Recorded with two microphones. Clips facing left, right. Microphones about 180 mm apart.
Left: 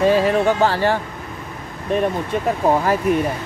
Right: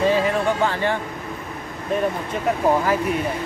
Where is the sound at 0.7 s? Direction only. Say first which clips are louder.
Left 4 dB; 35° left (ahead or behind).